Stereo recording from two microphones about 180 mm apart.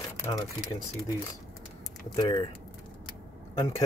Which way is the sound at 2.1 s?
25° left (ahead or behind).